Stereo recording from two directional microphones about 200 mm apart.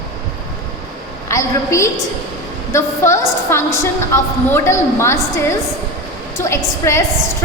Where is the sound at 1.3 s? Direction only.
15° left (ahead or behind).